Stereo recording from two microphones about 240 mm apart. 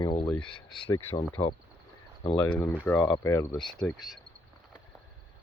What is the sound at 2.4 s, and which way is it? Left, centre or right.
Speech, centre.